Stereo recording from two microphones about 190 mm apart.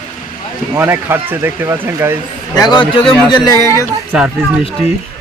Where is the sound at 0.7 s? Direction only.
10° right (ahead or behind).